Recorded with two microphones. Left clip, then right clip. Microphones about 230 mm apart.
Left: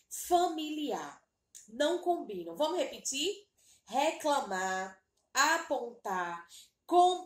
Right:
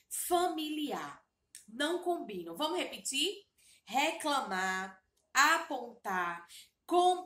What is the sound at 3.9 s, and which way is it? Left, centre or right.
A child's voice, centre.